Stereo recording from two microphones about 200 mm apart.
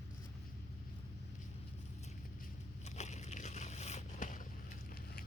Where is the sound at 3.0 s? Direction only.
35° left (ahead or behind).